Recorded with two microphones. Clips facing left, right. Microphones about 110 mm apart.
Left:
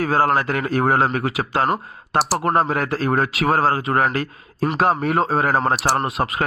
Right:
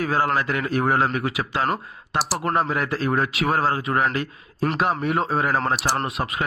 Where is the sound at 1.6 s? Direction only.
5° left (ahead or behind).